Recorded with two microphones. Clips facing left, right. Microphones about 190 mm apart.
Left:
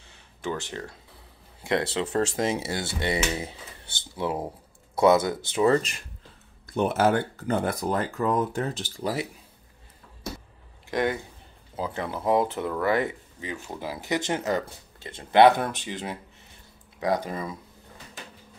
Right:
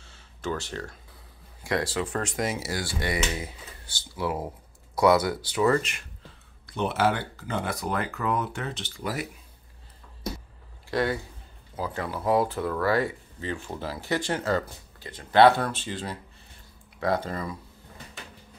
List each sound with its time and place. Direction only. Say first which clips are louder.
0.0 s a sound: left 1 dB; 15° left (ahead or behind)
1.6 s speech: left 2 dB; 25° left (ahead or behind)
6.7 s speech: left 3 dB; 45° left (ahead or behind)
7.9 s speech: left 2 dB; 35° left (ahead or behind)
10.9 s speech: even; 20° left (ahead or behind)